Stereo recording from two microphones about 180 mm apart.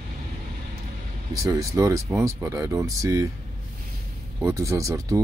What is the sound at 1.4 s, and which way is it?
Speech, 20° right (ahead or behind).